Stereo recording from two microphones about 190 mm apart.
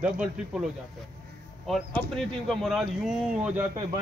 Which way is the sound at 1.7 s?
Centre (ahead or behind).